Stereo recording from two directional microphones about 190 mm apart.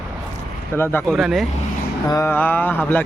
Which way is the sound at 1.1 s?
Centre (ahead or behind).